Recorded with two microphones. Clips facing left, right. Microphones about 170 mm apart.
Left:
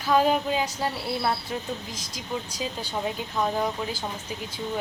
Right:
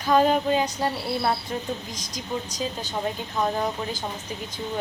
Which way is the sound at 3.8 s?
10° left (ahead or behind).